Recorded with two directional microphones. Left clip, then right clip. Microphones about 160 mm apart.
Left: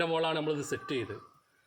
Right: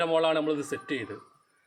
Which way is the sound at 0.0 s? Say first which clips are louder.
Right 5 dB; 25° left (ahead or behind).